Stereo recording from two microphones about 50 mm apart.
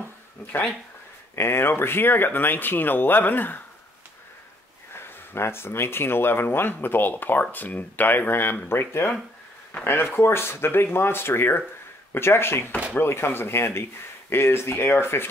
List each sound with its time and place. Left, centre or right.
1.3 s speech: left
4.9 s speech: left